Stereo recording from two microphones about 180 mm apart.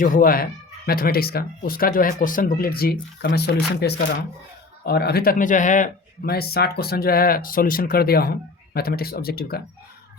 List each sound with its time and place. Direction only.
0.0 s speech: 50° left (ahead or behind)